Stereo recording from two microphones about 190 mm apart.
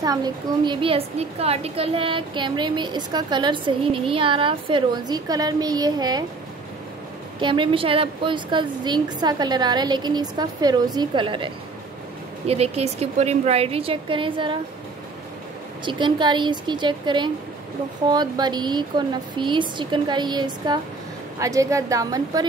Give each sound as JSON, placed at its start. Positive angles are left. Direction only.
{"t": 0.0, "sound": "a woman's voice", "side_deg": -20}
{"t": 7.3, "sound": "a woman's voice", "side_deg": -25}
{"t": 15.8, "sound": "a woman's voice", "side_deg": -25}